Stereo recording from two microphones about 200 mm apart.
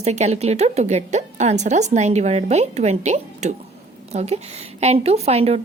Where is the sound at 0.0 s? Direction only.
35° right (ahead or behind).